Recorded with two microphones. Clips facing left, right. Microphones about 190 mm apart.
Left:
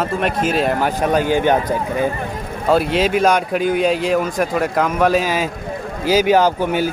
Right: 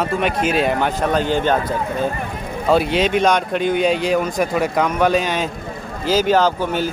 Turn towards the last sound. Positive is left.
turn(degrees=10)  # may be behind; listen again after turning